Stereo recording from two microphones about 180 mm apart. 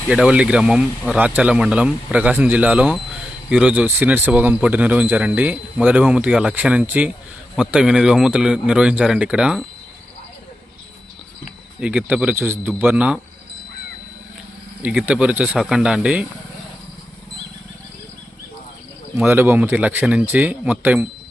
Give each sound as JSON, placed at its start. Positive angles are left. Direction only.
{"t": 0.1, "sound": "speech", "side_deg": -5}
{"t": 11.8, "sound": "speech", "side_deg": -10}
{"t": 14.8, "sound": "speech", "side_deg": -5}
{"t": 19.1, "sound": "speech", "side_deg": -10}